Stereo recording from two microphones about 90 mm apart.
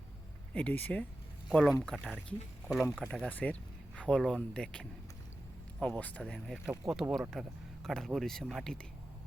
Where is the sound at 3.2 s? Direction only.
15° left (ahead or behind).